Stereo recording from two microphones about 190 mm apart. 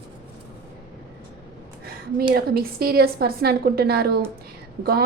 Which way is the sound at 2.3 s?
55° right (ahead or behind).